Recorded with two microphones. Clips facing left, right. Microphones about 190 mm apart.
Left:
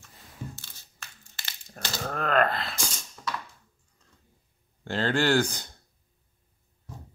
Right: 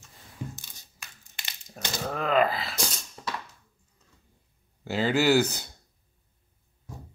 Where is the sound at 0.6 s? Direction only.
15° right (ahead or behind).